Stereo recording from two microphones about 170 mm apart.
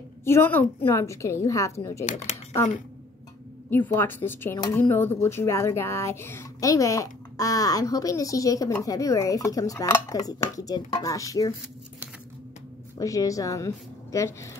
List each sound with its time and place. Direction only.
0.2 s speech: 15° left (ahead or behind)
2.0 s speech: 40° left (ahead or behind)
3.7 s speech: 10° left (ahead or behind)
12.9 s speech: 20° left (ahead or behind)